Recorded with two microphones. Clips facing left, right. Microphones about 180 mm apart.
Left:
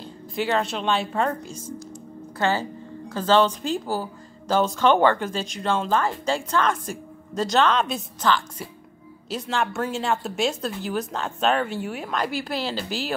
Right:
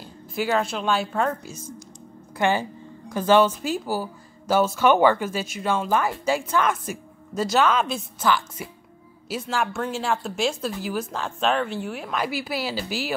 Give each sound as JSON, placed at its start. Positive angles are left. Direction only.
{"t": 0.0, "sound": "a woman's voice", "side_deg": 0}
{"t": 2.3, "sound": "speech", "side_deg": -15}